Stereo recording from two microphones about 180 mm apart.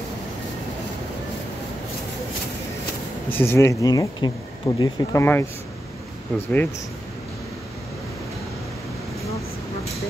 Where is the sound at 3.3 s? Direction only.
10° left (ahead or behind).